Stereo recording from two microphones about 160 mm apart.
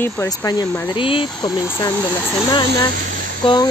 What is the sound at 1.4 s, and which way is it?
Speech, 20° left (ahead or behind).